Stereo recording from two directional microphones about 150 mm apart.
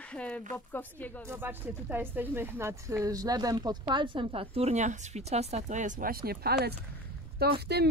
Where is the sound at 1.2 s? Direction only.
15° right (ahead or behind).